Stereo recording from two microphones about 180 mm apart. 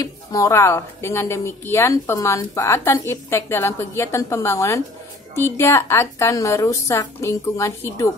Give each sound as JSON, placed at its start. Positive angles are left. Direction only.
{"t": 0.0, "sound": "a woman's voice", "side_deg": 20}